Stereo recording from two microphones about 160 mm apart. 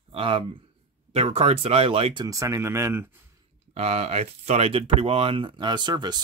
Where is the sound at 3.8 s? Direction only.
40° right (ahead or behind).